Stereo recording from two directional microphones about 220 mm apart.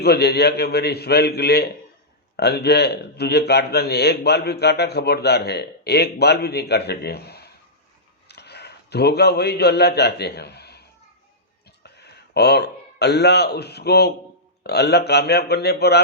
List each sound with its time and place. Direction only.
0.0 s a man's voice: 45° left (ahead or behind)